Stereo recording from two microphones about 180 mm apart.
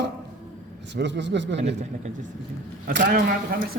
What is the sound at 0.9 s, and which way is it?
Speech, 75° right (ahead or behind).